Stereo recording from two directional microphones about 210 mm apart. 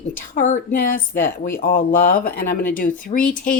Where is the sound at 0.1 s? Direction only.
35° left (ahead or behind).